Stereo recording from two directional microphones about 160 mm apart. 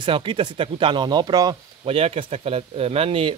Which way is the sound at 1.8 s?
40° right (ahead or behind).